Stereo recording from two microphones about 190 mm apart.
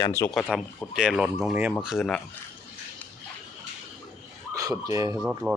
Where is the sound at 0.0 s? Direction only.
15° left (ahead or behind).